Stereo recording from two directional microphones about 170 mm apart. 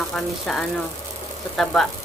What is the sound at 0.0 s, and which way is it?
A woman's voice, centre (ahead or behind).